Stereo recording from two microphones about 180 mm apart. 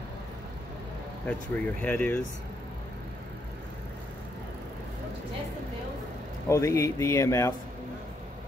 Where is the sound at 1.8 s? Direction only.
10° left (ahead or behind).